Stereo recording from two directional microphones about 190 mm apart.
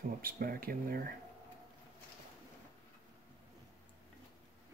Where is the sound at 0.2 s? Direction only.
50° right (ahead or behind).